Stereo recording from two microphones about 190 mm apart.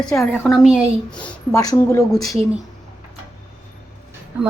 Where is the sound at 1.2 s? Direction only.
20° left (ahead or behind).